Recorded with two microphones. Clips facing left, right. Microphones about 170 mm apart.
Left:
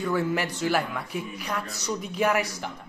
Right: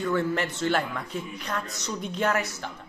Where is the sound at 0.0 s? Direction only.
10° left (ahead or behind).